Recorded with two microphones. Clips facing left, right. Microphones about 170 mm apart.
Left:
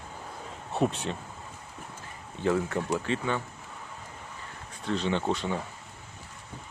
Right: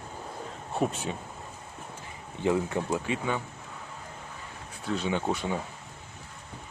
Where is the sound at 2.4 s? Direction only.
15° right (ahead or behind).